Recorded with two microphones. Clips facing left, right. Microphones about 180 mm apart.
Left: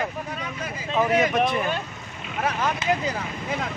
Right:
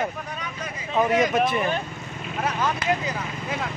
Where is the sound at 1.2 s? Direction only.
Centre (ahead or behind).